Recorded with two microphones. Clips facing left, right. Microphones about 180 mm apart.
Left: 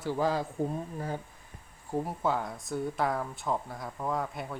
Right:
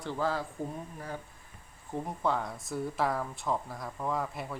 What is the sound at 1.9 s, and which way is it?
Speech, 5° left (ahead or behind).